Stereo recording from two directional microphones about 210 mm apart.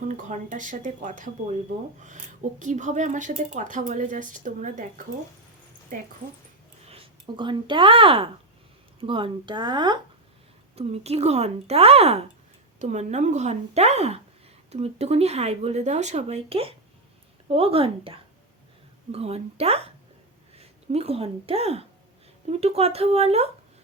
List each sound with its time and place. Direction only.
0.0 s a woman's voice: 35° right (ahead or behind)
6.8 s a woman's voice: 25° right (ahead or behind)